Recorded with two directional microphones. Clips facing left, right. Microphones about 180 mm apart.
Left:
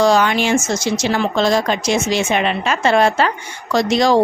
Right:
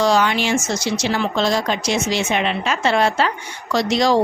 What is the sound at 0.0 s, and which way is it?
Speech, 50° left (ahead or behind).